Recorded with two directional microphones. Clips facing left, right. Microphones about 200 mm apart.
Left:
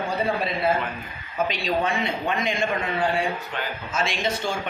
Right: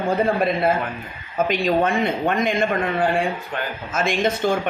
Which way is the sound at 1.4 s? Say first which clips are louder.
Right 6 dB; 55° right (ahead or behind).